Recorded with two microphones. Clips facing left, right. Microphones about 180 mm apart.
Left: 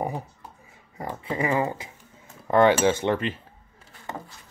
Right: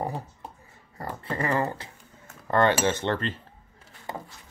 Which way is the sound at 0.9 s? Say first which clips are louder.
Left 2 dB; 10° left (ahead or behind).